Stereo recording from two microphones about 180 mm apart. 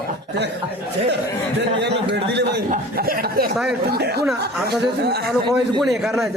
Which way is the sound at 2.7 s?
55° right (ahead or behind).